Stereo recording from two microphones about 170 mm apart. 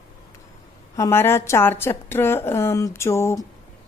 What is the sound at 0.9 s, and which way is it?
A woman's voice, 15° left (ahead or behind).